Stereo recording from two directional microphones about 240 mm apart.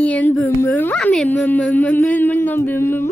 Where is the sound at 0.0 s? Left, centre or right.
Centre.